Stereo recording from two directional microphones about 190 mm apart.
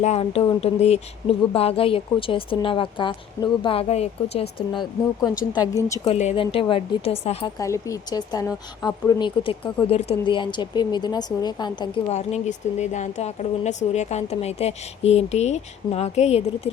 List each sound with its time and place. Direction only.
0.0 s speech: 35° left (ahead or behind); by 6.0 s 20° left (ahead or behind)
6.1 s speech: 35° left (ahead or behind)
7.6 s speech: 15° left (ahead or behind)
12.1 s a woman's voice: 35° left (ahead or behind)